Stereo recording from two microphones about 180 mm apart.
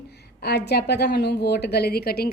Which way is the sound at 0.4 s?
65° left (ahead or behind).